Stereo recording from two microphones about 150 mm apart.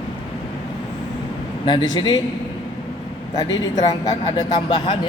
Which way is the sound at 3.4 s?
25° left (ahead or behind).